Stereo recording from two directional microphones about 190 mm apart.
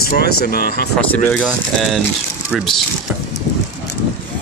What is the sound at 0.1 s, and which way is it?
Speech, 55° left (ahead or behind).